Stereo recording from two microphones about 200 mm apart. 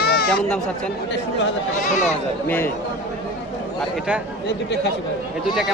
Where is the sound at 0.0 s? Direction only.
50° left (ahead or behind).